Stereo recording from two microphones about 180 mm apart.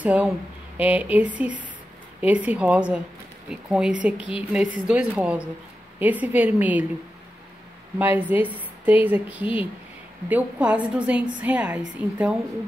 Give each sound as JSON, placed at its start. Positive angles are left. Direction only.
{"t": 0.0, "sound": "a woman's voice", "side_deg": -10}
{"t": 8.0, "sound": "a woman's voice", "side_deg": -10}